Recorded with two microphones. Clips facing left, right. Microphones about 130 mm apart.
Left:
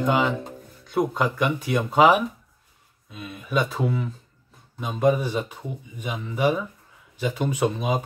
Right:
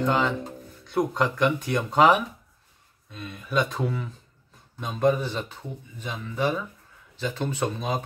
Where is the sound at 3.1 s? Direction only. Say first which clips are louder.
Left 1 dB; 5° left (ahead or behind).